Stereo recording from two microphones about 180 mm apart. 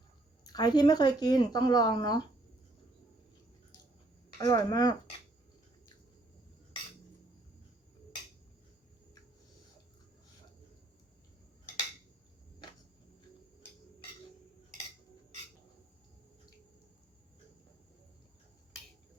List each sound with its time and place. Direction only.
0.4 s speech: 20° left (ahead or behind)
4.4 s speech: 20° left (ahead or behind)